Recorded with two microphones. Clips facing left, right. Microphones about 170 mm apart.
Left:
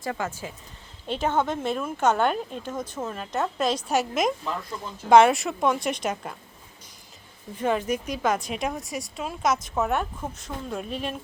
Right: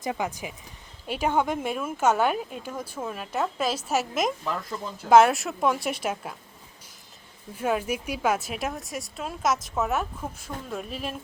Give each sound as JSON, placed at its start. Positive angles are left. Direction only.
{"t": 0.0, "sound": "speech", "side_deg": -15}
{"t": 7.5, "sound": "speech", "side_deg": -5}